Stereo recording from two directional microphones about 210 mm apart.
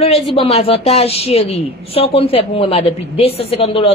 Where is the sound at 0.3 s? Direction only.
30° left (ahead or behind).